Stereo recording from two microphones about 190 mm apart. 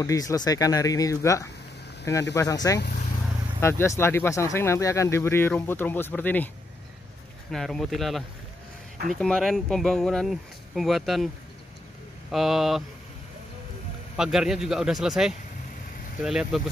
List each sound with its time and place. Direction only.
0.0 s speech: 15° left (ahead or behind)
7.5 s speech: centre (ahead or behind)
9.2 s speech: centre (ahead or behind)
12.3 s speech: centre (ahead or behind)
14.1 s speech: 5° right (ahead or behind)